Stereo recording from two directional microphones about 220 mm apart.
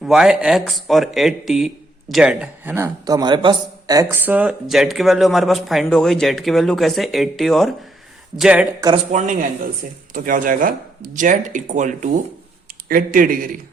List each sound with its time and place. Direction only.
0.0 s a man's voice: centre (ahead or behind)
8.8 s speech: 15° right (ahead or behind)
9.1 s speech: 35° right (ahead or behind)